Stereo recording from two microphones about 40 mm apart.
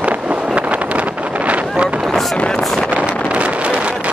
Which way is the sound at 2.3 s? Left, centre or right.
Left.